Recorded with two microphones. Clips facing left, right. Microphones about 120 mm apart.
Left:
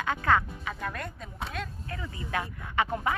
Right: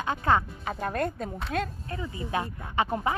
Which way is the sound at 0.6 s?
40° right (ahead or behind).